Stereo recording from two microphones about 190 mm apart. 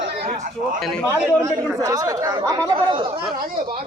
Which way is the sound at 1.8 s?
20° right (ahead or behind).